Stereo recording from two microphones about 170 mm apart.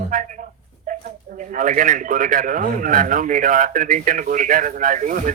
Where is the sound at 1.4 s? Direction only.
50° right (ahead or behind).